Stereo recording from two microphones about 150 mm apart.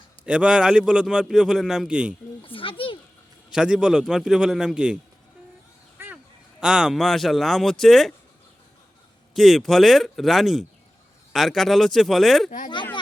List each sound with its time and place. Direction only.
0.3 s a man's voice: 5° right (ahead or behind)
2.4 s a child's voice: 35° left (ahead or behind)
3.5 s a man's voice: 5° right (ahead or behind)
6.0 s a sound: 15° right (ahead or behind)
6.6 s a man's voice: 5° right (ahead or behind)
9.3 s a man's voice: centre (ahead or behind)